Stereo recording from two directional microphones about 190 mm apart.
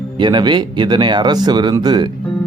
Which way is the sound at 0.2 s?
25° right (ahead or behind).